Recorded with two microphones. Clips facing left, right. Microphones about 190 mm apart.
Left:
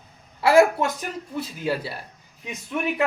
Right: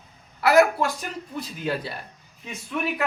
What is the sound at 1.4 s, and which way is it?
Speech, 5° left (ahead or behind).